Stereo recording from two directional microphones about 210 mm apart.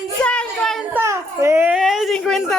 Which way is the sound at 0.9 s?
15° right (ahead or behind).